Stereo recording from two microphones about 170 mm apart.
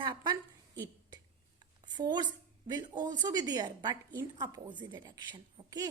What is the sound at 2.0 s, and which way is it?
A woman's voice, 25° right (ahead or behind).